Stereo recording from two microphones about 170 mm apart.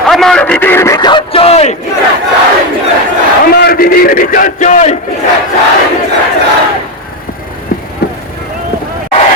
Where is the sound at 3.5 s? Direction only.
65° left (ahead or behind); by 4.9 s 45° left (ahead or behind).